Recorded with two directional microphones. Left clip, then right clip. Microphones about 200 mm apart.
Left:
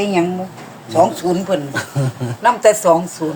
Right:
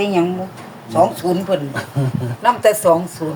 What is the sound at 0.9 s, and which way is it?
Speech, 15° left (ahead or behind).